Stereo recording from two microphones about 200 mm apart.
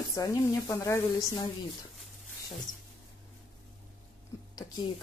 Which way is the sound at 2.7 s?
40° left (ahead or behind).